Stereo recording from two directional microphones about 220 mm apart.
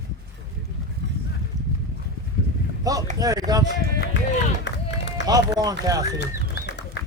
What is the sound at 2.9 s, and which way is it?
Speech, 15° right (ahead or behind).